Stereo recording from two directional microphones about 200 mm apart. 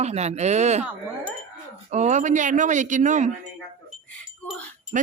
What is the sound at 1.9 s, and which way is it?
Speech, 35° right (ahead or behind).